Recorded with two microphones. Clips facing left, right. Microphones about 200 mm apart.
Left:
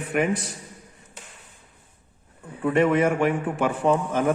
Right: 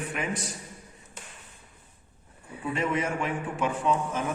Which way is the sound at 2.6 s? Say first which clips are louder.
Left 9 dB; 65° left (ahead or behind).